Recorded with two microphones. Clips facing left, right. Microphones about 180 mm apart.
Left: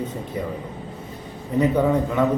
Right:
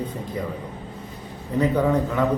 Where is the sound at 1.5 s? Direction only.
10° left (ahead or behind).